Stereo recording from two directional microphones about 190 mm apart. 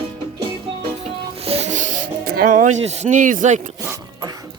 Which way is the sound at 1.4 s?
35° right (ahead or behind).